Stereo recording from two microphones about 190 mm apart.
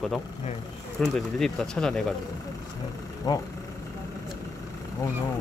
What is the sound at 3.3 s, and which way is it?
Speech, 20° left (ahead or behind).